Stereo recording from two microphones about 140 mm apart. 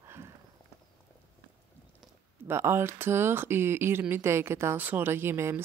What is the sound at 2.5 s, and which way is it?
A woman's voice, 15° right (ahead or behind).